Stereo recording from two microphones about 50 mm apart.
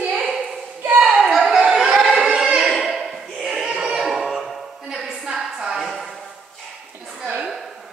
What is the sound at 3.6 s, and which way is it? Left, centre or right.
Music, centre.